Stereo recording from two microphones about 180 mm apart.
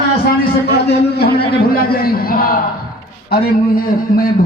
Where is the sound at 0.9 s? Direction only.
65° left (ahead or behind).